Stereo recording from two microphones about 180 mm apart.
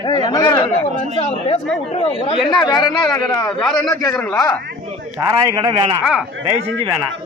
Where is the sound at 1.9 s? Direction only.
35° left (ahead or behind).